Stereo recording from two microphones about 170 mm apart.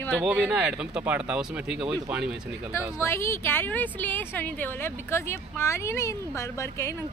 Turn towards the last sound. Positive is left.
turn(degrees=15)  # may be behind; listen again after turning